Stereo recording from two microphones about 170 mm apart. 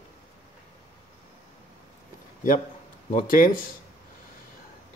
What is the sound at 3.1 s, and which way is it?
Speech, 55° left (ahead or behind).